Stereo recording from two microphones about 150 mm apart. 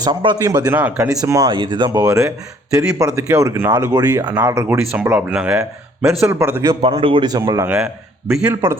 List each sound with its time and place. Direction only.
0.0 s a man's voice: 30° right (ahead or behind)
0.8 s speech: 10° right (ahead or behind)
1.1 s a man's voice: 25° right (ahead or behind); by 6.2 s centre (ahead or behind)
6.4 s a man's voice: 20° right (ahead or behind)
6.8 s a man's voice: 35° right (ahead or behind)
8.3 s a man's voice: 5° right (ahead or behind)